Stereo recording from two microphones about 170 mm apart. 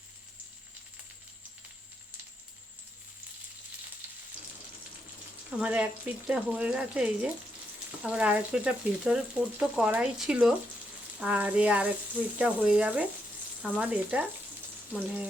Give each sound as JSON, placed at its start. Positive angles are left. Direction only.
{"t": 5.5, "sound": "speech", "side_deg": -5}